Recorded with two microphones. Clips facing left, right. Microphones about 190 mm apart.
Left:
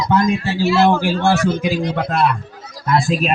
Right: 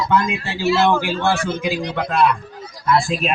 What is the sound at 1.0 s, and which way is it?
A man's voice, 40° left (ahead or behind).